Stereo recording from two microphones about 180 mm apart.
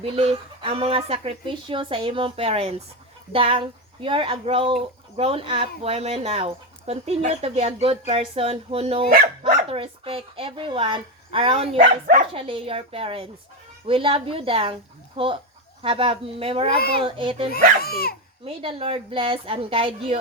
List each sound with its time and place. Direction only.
0.0 s speech: 35° right (ahead or behind)
12.0 s speech: 55° right (ahead or behind)
12.3 s speech: 30° right (ahead or behind)
16.7 s a child's voice: 60° left (ahead or behind)
17.2 s speech: 30° right (ahead or behind)
17.8 s speech: 55° left (ahead or behind)
18.4 s speech: 30° right (ahead or behind)